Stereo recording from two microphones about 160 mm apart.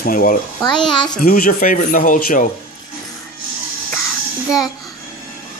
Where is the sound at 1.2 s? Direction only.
60° left (ahead or behind).